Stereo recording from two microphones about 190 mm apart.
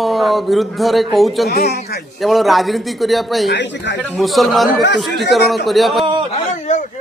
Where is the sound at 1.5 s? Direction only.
55° left (ahead or behind).